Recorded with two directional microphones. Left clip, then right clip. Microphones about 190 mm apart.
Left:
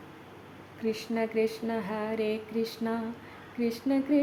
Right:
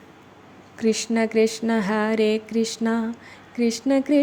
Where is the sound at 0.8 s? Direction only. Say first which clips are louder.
Right 9 dB; 30° right (ahead or behind).